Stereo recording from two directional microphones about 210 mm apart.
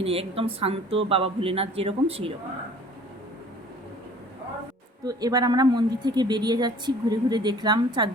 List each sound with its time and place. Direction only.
0.0 s speech: 25° right (ahead or behind)
5.0 s speech: 15° right (ahead or behind)